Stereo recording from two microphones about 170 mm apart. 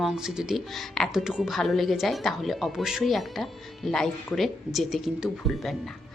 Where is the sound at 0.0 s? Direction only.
5° right (ahead or behind).